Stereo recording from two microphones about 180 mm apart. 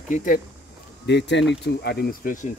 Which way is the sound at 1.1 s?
75° left (ahead or behind).